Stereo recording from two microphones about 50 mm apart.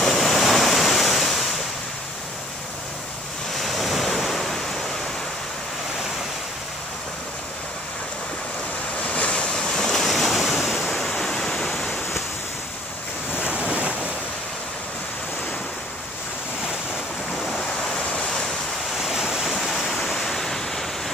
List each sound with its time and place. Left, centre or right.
0.0 s waves: centre
3.5 s waves: centre
9.0 s waves: left
9.5 s waves: centre
13.4 s waves: right
17.5 s waves: centre
18.1 s waves: centre
19.0 s waterfall: centre
20.2 s waves: centre